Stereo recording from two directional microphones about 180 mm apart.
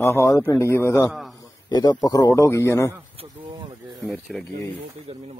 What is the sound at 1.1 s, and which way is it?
Speech, centre (ahead or behind).